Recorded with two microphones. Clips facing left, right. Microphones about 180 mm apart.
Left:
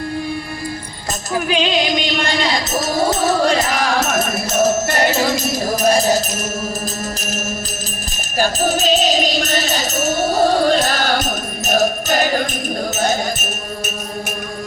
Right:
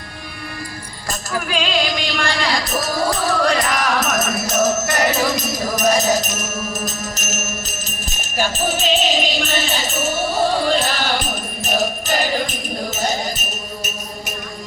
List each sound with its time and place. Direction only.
1.3 s music: 20° left (ahead or behind); by 12.4 s 45° left (ahead or behind)